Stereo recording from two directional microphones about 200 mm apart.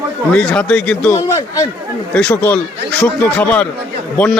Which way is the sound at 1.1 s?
15° left (ahead or behind).